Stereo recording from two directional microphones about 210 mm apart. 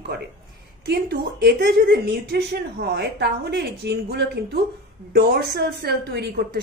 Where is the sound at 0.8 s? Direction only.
50° right (ahead or behind).